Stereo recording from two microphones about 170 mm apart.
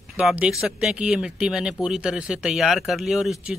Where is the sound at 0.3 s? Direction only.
Centre (ahead or behind).